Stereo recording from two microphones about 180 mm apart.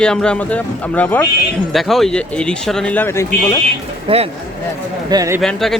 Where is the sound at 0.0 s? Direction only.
5° left (ahead or behind).